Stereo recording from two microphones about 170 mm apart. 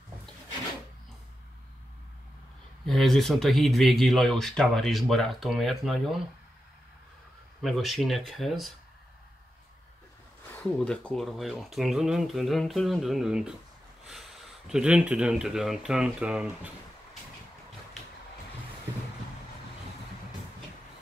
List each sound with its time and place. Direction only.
2.8 s speech: centre (ahead or behind)
7.6 s speech: centre (ahead or behind)
10.6 s speech: 5° left (ahead or behind)
14.7 s speech: 5° right (ahead or behind)